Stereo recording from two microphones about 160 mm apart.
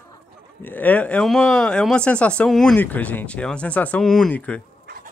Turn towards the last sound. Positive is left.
turn(degrees=10)  # may be behind; listen again after turning